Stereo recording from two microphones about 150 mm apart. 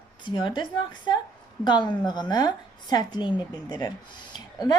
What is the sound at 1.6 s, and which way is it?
A woman's voice, 30° left (ahead or behind).